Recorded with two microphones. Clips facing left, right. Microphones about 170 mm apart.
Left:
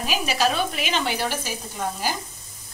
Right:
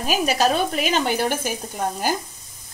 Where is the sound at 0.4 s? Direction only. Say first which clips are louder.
Right 3 dB; 40° right (ahead or behind).